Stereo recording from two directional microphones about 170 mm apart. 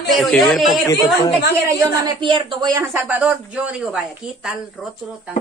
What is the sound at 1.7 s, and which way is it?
A woman's voice, 20° right (ahead or behind).